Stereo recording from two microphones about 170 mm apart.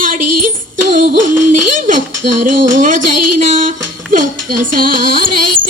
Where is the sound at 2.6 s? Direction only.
50° right (ahead or behind).